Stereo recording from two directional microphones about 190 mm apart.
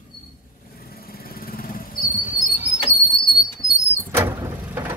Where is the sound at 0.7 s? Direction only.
50° left (ahead or behind).